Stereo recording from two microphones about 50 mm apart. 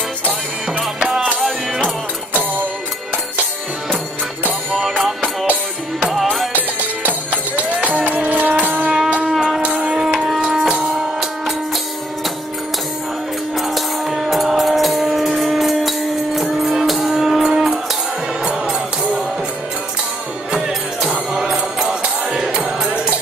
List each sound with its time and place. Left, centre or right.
0.7 s music: centre
4.8 s music: centre
5.5 s music: right
9.2 s shofar: centre
9.7 s music: centre
10.1 s music: centre
13.6 s music: centre
20.5 s music: centre